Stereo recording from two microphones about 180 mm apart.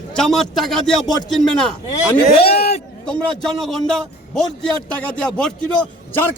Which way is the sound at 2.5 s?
35° left (ahead or behind).